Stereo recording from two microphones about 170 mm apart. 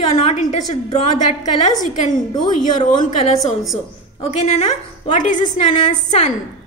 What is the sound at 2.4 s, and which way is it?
Speech, 50° left (ahead or behind).